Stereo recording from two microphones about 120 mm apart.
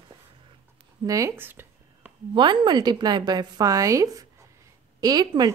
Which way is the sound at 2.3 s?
40° right (ahead or behind).